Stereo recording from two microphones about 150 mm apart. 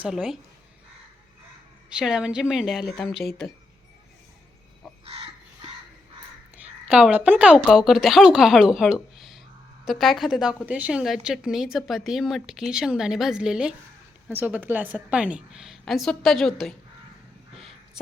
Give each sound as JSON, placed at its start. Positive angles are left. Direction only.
{"t": 0.0, "sound": "a woman's voice", "side_deg": 0}
{"t": 2.0, "sound": "a woman's voice", "side_deg": -5}
{"t": 5.0, "sound": "crow", "side_deg": -40}
{"t": 6.8, "sound": "a woman's voice", "side_deg": -10}